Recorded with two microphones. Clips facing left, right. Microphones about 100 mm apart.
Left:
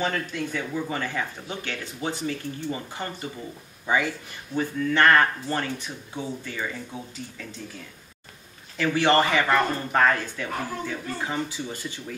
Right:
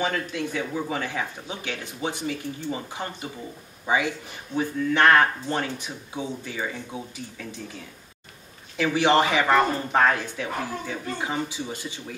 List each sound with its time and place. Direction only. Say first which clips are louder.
0.0 s speech: right 1 dB; 10° right (ahead or behind)
8.7 s speech: right 1 dB; 15° right (ahead or behind)